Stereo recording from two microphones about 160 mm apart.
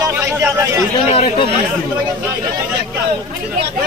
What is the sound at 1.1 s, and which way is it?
Speech, 40° left (ahead or behind).